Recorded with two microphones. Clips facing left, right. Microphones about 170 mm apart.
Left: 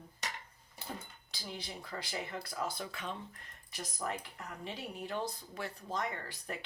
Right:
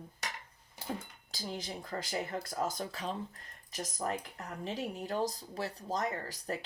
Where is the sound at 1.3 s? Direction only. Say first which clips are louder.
Right 5 dB; 45° right (ahead or behind).